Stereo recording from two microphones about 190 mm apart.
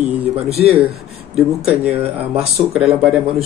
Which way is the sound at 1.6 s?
5° right (ahead or behind).